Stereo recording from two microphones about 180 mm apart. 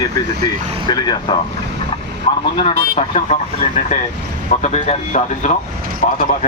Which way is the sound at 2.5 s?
30° left (ahead or behind).